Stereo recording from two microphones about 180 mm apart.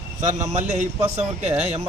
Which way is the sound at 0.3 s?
40° right (ahead or behind).